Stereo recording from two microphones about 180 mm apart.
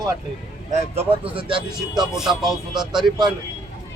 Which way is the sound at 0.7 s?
35° right (ahead or behind).